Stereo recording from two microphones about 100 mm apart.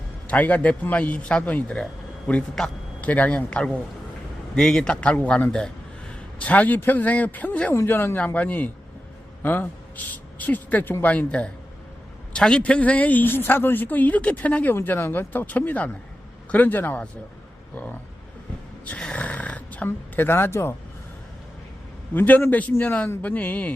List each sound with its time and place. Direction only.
0.3 s speech: 15° left (ahead or behind)
18.9 s speech: 10° left (ahead or behind)
22.1 s a man's voice: 20° left (ahead or behind)